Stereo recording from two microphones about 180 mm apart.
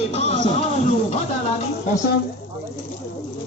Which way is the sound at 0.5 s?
35° left (ahead or behind).